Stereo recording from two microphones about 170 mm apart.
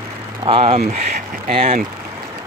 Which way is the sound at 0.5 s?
35° right (ahead or behind).